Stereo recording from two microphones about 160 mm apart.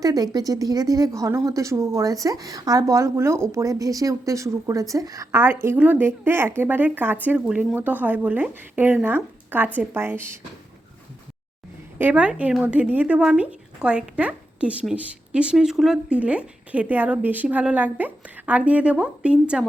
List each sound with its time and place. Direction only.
0.0 s speech: 25° right (ahead or behind)
11.9 s speech: 10° right (ahead or behind)